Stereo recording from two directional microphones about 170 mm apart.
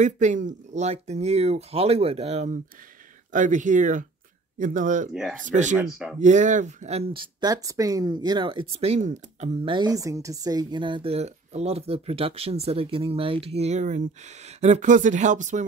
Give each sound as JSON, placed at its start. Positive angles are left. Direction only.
{"t": 0.0, "sound": "speech", "side_deg": -45}
{"t": 5.8, "sound": "speech", "side_deg": -5}
{"t": 6.1, "sound": "speech", "side_deg": -45}
{"t": 9.8, "sound": "speech", "side_deg": -20}